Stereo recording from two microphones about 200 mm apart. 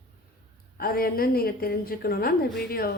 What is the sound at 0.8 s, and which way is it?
A woman's voice, 45° left (ahead or behind).